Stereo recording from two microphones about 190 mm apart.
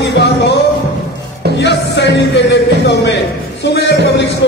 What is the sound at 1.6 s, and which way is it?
Music, 65° left (ahead or behind).